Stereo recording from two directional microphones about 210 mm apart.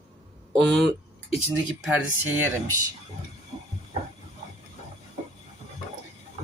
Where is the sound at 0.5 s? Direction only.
Centre (ahead or behind).